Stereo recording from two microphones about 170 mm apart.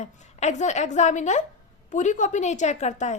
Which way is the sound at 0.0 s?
40° left (ahead or behind).